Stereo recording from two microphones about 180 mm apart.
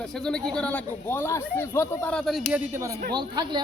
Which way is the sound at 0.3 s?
5° left (ahead or behind).